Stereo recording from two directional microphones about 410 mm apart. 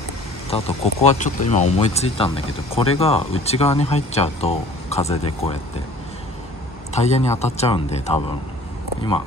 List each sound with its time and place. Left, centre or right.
0.5 s speech: centre
6.9 s speech: centre